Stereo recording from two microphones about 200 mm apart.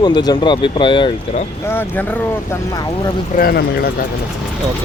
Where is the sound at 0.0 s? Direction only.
20° left (ahead or behind).